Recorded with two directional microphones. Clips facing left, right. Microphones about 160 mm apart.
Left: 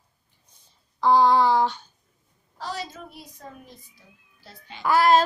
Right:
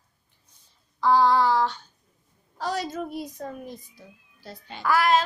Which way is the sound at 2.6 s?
45° right (ahead or behind).